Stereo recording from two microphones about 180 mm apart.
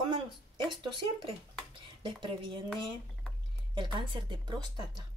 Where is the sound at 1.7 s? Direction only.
25° right (ahead or behind).